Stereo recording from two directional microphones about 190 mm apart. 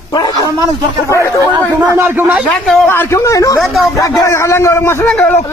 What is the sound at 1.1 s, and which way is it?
Speech, 15° left (ahead or behind).